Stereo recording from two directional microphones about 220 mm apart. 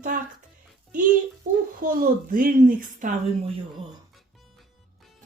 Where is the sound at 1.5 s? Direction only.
35° right (ahead or behind).